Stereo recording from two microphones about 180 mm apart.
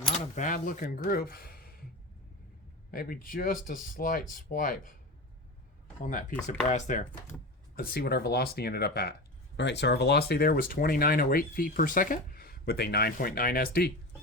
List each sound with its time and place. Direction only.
0.3 s speech: 45° left (ahead or behind)
2.9 s speech: 55° left (ahead or behind)
6.7 s speech: 45° left (ahead or behind)
7.8 s speech: 60° left (ahead or behind)
9.6 s speech: 75° left (ahead or behind); by 13.9 s 55° left (ahead or behind)